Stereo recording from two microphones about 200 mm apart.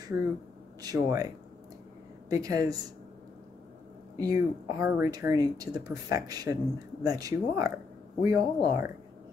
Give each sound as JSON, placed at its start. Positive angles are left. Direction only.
{"t": 0.8, "sound": "speech", "side_deg": -15}
{"t": 4.2, "sound": "speech", "side_deg": -15}